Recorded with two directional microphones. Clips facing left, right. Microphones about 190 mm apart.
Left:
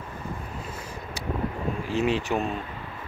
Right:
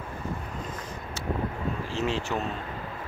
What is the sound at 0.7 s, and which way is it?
Vehicle, 10° left (ahead or behind).